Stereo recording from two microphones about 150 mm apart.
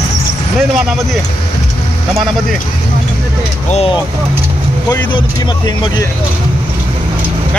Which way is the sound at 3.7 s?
40° left (ahead or behind).